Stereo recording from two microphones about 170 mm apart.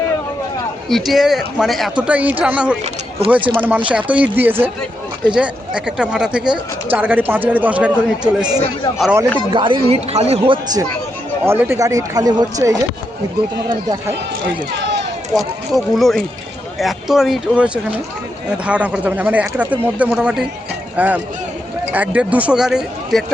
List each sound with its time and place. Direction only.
0.9 s speech: centre (ahead or behind)
9.5 s speech: 30° right (ahead or behind)
11.4 s speech: 15° right (ahead or behind)
14.7 s run: 90° right
15.9 s speech: centre (ahead or behind)